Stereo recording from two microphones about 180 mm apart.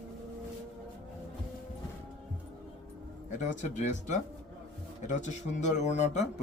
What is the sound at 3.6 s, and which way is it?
Speech, 40° left (ahead or behind).